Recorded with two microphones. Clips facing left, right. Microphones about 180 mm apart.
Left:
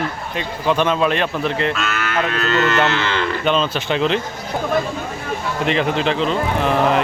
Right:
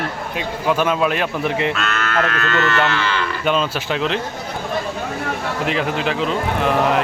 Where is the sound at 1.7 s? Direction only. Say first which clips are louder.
Even; 5° left (ahead or behind); by 3.2 s 25° left (ahead or behind).